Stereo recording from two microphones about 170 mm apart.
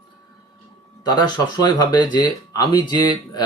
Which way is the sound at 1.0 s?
25° left (ahead or behind).